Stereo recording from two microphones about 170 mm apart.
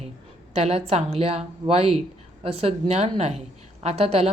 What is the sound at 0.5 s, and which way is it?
A woman's voice, 40° right (ahead or behind).